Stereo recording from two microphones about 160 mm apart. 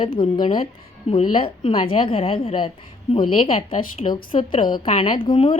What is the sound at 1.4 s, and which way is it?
A woman's voice, 35° left (ahead or behind).